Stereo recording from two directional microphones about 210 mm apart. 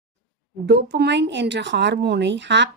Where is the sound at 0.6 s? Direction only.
55° right (ahead or behind).